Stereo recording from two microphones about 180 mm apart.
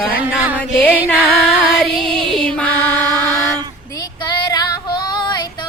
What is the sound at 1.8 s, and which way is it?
Music, centre (ahead or behind).